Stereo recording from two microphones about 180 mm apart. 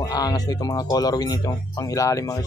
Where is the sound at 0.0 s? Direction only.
20° left (ahead or behind).